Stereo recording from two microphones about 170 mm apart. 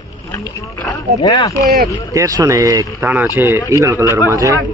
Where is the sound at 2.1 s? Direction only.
20° right (ahead or behind).